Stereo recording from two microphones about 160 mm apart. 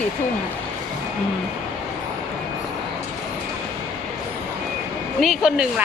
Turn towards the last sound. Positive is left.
turn(degrees=0)  # may be behind; listen again after turning